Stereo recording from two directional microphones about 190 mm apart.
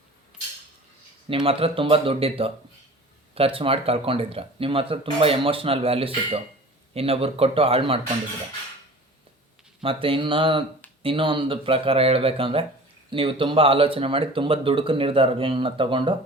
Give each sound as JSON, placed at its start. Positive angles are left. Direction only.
{"t": 1.3, "sound": "speech", "side_deg": -30}
{"t": 9.8, "sound": "speech", "side_deg": -30}